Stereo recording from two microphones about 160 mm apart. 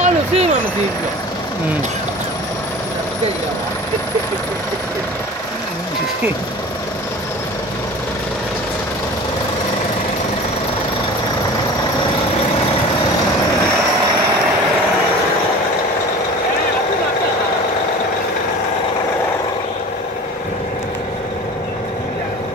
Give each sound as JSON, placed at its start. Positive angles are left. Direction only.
{"t": 0.0, "sound": "vehicle", "side_deg": -40}